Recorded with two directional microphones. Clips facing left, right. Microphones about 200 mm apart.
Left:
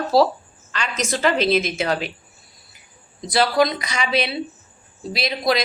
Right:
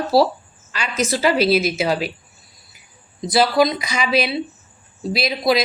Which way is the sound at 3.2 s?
5° right (ahead or behind).